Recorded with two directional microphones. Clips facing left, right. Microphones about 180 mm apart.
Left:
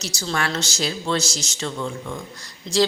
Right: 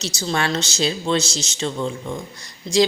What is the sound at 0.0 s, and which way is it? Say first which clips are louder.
A man's voice: right 3 dB; 20° right (ahead or behind).